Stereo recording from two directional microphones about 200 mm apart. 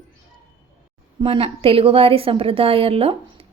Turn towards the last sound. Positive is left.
turn(degrees=-30)  # may be behind; listen again after turning